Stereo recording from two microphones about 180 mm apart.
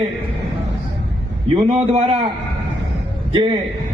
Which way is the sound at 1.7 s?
35° right (ahead or behind).